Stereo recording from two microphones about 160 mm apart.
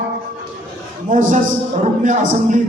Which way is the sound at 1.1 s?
50° right (ahead or behind).